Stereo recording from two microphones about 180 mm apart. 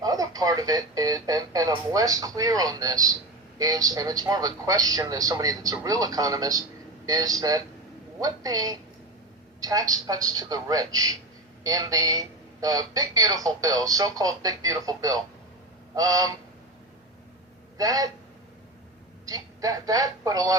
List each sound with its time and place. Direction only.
0.0 s speech: 20° right (ahead or behind)
17.7 s speech: 20° right (ahead or behind)
19.2 s speech: 20° right (ahead or behind)